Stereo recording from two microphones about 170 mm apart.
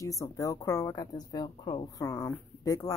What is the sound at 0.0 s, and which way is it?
Speech, 20° left (ahead or behind).